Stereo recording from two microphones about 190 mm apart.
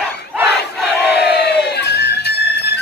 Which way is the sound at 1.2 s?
60° left (ahead or behind).